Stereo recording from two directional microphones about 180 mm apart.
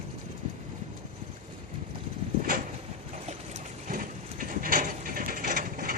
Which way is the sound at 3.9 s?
50° right (ahead or behind).